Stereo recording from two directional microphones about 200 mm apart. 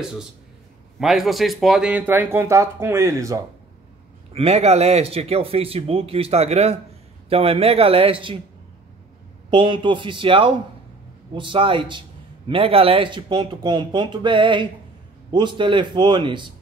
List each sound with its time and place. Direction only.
0.9 s speech: centre (ahead or behind)
4.3 s speech: 30° right (ahead or behind)
9.5 s speech: 25° right (ahead or behind)